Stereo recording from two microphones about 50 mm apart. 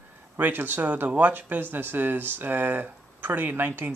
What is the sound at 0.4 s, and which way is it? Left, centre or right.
Speech, right.